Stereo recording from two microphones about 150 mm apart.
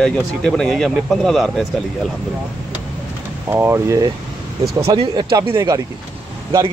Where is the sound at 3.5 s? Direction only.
15° right (ahead or behind).